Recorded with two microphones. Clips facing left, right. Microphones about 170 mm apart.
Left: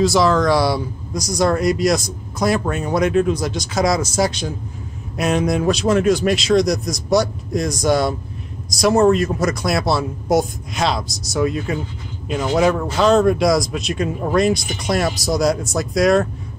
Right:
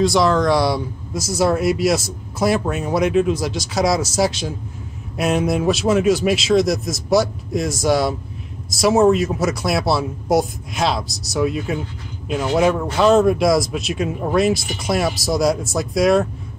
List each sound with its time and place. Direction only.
0.0 s speech: centre (ahead or behind)